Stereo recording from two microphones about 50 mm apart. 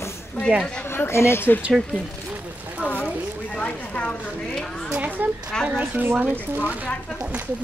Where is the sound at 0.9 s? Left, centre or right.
Left.